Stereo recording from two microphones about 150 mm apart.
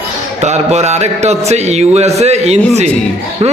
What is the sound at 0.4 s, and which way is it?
A man's voice, 45° right (ahead or behind).